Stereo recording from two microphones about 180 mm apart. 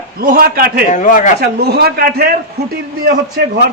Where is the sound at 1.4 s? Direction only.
60° right (ahead or behind).